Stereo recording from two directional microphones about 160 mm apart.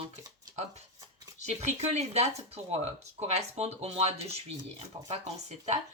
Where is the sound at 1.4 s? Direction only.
45° right (ahead or behind).